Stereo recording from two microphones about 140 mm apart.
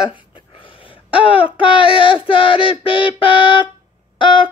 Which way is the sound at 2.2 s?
40° left (ahead or behind).